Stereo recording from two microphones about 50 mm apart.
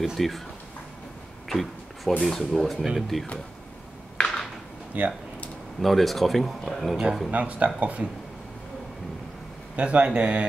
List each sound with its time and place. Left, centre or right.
0.0 s speech: centre
1.5 s a sound: centre
2.2 s speech: centre
4.9 s speech: right
5.8 s speech: centre
7.2 s speech: right
9.8 s speech: right